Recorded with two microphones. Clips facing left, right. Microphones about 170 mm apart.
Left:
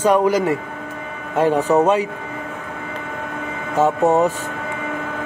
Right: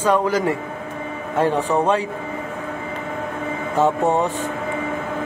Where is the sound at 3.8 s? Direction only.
10° left (ahead or behind).